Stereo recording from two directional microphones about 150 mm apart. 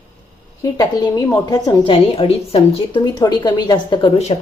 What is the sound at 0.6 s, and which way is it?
A woman's voice, 25° left (ahead or behind).